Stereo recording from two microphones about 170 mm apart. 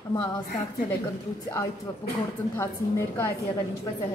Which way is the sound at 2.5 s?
15° left (ahead or behind).